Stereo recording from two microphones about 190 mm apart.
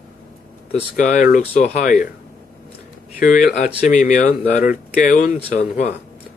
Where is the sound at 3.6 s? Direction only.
40° left (ahead or behind).